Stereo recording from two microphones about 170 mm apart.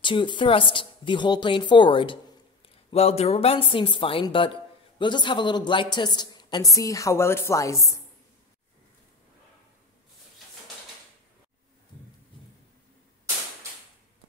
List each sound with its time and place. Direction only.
0.0 s speech: 30° left (ahead or behind)